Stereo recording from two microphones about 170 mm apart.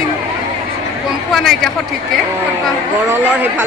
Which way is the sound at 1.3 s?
Centre (ahead or behind).